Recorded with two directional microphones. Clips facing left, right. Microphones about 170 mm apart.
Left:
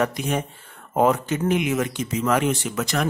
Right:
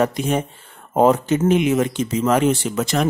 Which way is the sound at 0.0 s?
25° right (ahead or behind).